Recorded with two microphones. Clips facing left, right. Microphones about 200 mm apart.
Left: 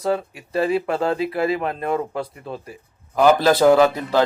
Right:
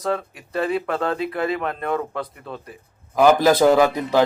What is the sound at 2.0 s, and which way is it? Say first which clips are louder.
Speech: left 2 dB; 30° left (ahead or behind).